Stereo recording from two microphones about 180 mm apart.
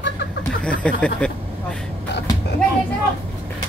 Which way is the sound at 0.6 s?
5° left (ahead or behind).